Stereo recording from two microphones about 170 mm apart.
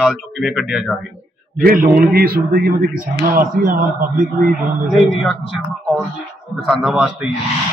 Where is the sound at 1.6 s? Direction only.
55° right (ahead or behind).